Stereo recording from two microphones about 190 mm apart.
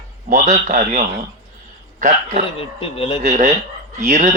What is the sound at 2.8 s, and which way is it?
Speech, 30° left (ahead or behind).